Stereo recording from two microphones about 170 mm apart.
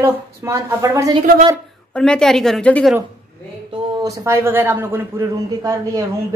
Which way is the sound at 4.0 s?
15° right (ahead or behind).